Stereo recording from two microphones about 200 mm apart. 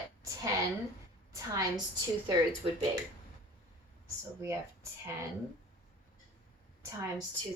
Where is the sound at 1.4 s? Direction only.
15° right (ahead or behind).